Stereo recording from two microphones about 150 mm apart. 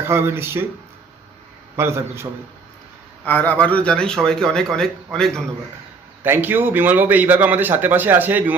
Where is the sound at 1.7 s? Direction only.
15° right (ahead or behind).